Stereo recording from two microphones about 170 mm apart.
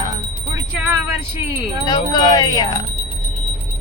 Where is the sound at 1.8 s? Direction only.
25° left (ahead or behind).